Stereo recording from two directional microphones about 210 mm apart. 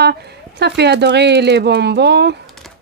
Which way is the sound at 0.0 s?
50° right (ahead or behind).